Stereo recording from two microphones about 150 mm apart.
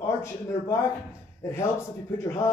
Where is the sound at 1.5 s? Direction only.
20° left (ahead or behind).